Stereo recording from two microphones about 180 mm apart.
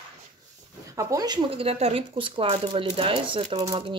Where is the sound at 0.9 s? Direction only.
20° right (ahead or behind).